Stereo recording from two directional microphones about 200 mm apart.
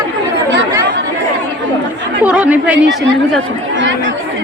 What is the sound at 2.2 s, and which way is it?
A woman's voice, 5° right (ahead or behind).